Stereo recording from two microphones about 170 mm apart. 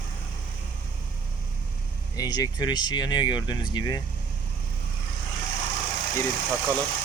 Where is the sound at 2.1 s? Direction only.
20° left (ahead or behind).